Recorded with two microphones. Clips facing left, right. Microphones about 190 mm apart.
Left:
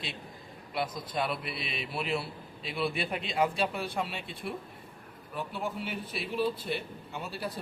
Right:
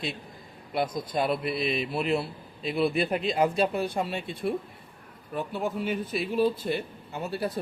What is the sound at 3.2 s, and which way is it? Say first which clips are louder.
A man's voice: right 2 dB; 45° right (ahead or behind).